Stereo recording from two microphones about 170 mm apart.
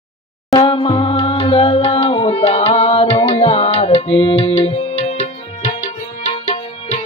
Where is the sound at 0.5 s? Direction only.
25° left (ahead or behind).